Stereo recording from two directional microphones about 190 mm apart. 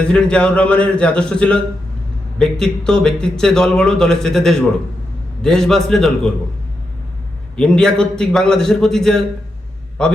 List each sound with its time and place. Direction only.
0.1 s a man's voice: 5° left (ahead or behind)
7.5 s a man's voice: 5° left (ahead or behind)